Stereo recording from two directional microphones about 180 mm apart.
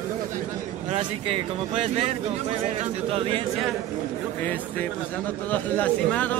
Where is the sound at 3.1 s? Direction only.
30° right (ahead or behind).